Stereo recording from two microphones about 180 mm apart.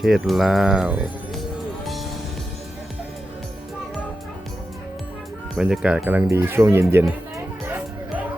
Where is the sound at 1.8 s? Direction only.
Centre (ahead or behind).